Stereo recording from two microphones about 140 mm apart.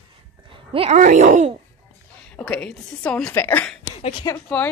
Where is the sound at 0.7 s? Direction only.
45° right (ahead or behind).